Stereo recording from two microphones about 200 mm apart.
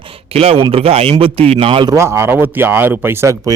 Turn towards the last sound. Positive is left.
turn(degrees=-15)  # may be behind; listen again after turning